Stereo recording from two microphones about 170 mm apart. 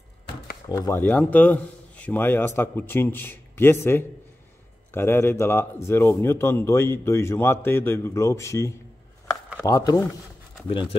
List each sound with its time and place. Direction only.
0.7 s speech: 15° left (ahead or behind)
10.7 s speech: 30° left (ahead or behind)